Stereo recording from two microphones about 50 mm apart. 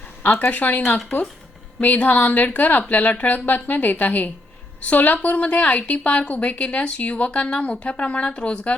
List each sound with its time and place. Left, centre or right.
0.2 s a woman's voice: left
1.8 s a woman's voice: left